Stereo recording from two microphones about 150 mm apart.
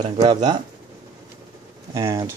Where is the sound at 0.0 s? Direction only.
25° right (ahead or behind).